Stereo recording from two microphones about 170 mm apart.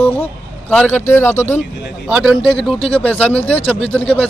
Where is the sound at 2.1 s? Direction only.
Centre (ahead or behind).